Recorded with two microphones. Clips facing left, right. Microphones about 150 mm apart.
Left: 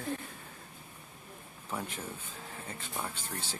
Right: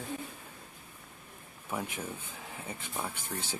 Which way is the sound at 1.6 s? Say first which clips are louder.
Right 2 dB; 10° right (ahead or behind).